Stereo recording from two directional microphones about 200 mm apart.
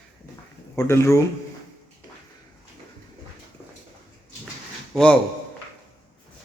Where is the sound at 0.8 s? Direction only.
15° left (ahead or behind).